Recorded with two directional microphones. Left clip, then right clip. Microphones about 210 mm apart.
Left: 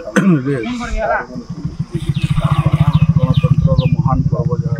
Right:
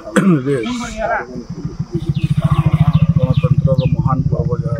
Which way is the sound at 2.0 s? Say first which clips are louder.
Even; 30° left (ahead or behind).